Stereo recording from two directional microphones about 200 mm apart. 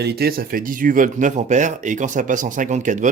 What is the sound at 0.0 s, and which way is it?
Speech, 50° right (ahead or behind).